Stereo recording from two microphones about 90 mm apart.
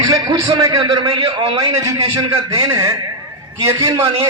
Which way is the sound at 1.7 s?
40° right (ahead or behind).